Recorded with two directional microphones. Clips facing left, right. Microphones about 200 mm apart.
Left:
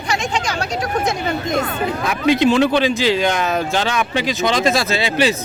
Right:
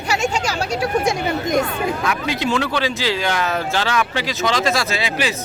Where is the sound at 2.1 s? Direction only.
20° left (ahead or behind).